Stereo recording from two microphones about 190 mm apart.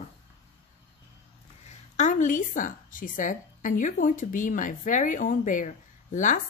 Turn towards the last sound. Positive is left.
turn(degrees=40)  # may be behind; listen again after turning